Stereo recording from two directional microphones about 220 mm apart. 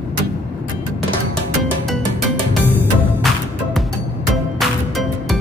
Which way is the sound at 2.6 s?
10° right (ahead or behind).